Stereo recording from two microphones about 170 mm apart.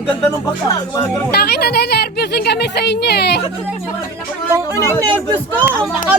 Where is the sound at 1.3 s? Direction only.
70° left (ahead or behind).